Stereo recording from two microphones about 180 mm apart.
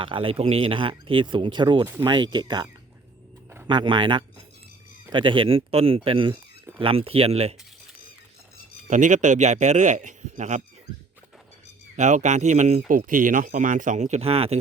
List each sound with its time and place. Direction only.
0.0 s speech: 30° right (ahead or behind)
3.7 s speech: 25° right (ahead or behind)
8.9 s speech: 45° right (ahead or behind)
11.9 s speech: 40° right (ahead or behind)